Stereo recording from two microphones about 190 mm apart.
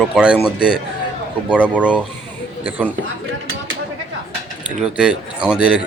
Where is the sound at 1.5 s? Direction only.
5° right (ahead or behind).